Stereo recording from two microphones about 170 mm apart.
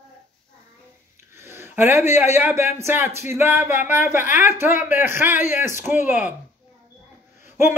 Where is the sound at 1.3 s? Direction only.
15° right (ahead or behind).